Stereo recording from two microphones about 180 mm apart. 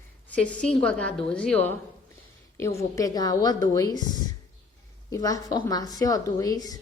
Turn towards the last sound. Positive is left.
turn(degrees=20)  # may be behind; listen again after turning